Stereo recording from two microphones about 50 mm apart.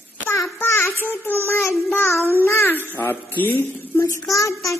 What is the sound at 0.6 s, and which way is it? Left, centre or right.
Speech, left.